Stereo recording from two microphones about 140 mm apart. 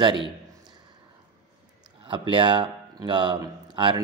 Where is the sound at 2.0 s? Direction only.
35° right (ahead or behind).